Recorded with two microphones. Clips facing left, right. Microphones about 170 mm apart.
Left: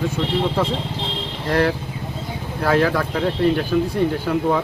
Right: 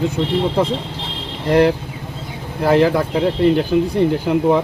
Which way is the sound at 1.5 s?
15° right (ahead or behind).